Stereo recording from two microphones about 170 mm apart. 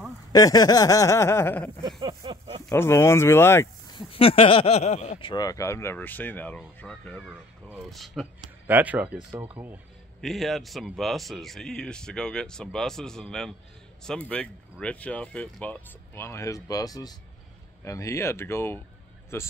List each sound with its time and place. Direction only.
0.3 s speech: 20° left (ahead or behind)
1.8 s a sound: 25° right (ahead or behind)
2.6 s speech: 15° left (ahead or behind)
3.9 s speech: 35° left (ahead or behind)
5.3 s speech: 20° left (ahead or behind); by 8.3 s centre (ahead or behind)
8.6 s speech: 10° right (ahead or behind)
10.2 s speech: centre (ahead or behind)